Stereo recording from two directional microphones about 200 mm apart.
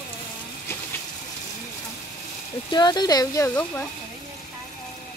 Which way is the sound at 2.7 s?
20° left (ahead or behind).